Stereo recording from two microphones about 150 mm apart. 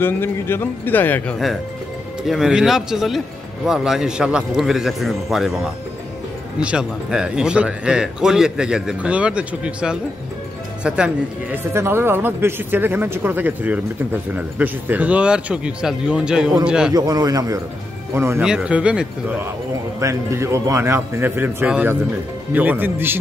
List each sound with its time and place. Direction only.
0.0 s a man's voice: 15° left (ahead or behind)
2.2 s a man's voice: 5° right (ahead or behind)
16.9 s a man's voice: 25° right (ahead or behind)